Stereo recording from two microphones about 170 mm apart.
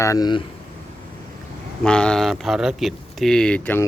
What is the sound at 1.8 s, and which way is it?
Speech, 5° left (ahead or behind).